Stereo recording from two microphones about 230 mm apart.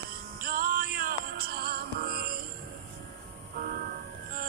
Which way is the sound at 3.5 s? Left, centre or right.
Right.